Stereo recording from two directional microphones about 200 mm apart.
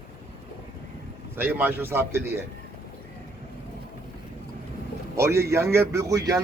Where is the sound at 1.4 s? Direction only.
10° right (ahead or behind).